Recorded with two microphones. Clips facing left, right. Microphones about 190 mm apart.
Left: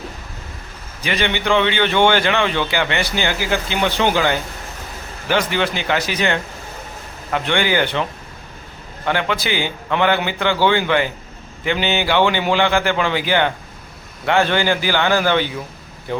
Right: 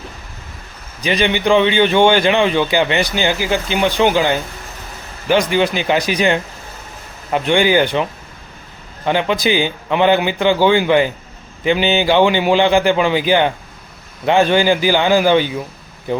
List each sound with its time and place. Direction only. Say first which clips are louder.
1.0 s a man's voice: right 4 dB; 15° right (ahead or behind)
9.0 s a man's voice: right 5 dB; 15° right (ahead or behind)